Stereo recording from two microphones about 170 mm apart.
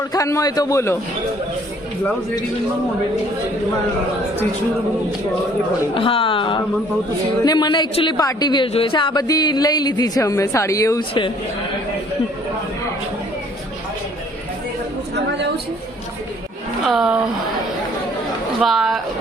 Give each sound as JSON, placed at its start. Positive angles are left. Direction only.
{"t": 0.1, "sound": "speech", "side_deg": 20}
{"t": 5.9, "sound": "speech", "side_deg": 30}
{"t": 15.1, "sound": "a sound", "side_deg": -85}
{"t": 16.8, "sound": "speech", "side_deg": -5}
{"t": 18.6, "sound": "speech", "side_deg": 0}